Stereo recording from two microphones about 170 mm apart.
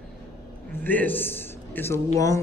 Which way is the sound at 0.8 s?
10° left (ahead or behind).